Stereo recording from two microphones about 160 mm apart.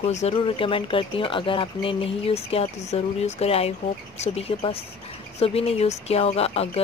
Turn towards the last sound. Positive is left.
turn(degrees=40)  # may be behind; listen again after turning